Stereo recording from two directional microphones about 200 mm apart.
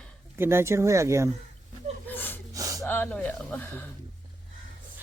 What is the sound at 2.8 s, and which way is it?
Speech, 10° left (ahead or behind).